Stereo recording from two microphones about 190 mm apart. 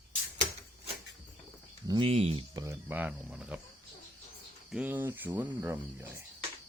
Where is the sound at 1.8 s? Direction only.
25° right (ahead or behind).